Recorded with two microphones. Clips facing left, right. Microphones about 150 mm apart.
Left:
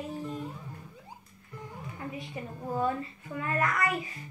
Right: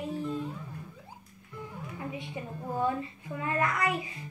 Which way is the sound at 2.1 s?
20° right (ahead or behind).